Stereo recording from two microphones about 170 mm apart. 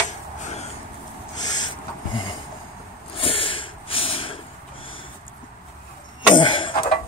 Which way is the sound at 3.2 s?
30° left (ahead or behind).